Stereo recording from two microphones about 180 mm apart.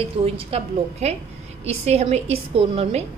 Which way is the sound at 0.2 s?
35° right (ahead or behind).